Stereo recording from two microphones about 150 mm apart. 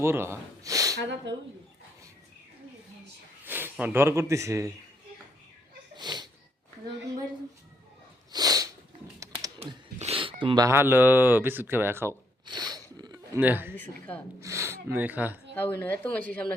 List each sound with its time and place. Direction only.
0.0 s speech: 15° right (ahead or behind)
3.4 s speech: 15° right (ahead or behind)
6.0 s a sound: 30° right (ahead or behind)
8.3 s sneeze: 25° right (ahead or behind)
9.6 s a sound: 40° right (ahead or behind)
10.7 s speech: 15° right (ahead or behind)
12.5 s a sound: 30° right (ahead or behind)
13.4 s speech: 15° right (ahead or behind)
13.7 s speech: 10° left (ahead or behind)
14.4 s speech: 20° right (ahead or behind)
15.5 s speech: 10° left (ahead or behind)